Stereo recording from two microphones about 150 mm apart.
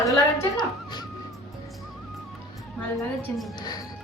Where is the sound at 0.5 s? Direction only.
30° left (ahead or behind).